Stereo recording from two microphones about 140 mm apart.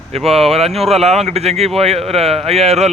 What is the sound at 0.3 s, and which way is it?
Speech, 45° right (ahead or behind).